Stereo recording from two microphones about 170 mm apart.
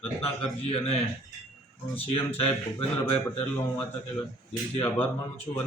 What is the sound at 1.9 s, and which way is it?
Speech, 35° left (ahead or behind).